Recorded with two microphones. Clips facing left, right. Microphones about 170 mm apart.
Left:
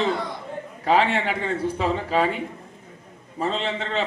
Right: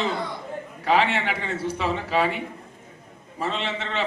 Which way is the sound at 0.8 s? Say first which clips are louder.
Left 1 dB; 40° left (ahead or behind).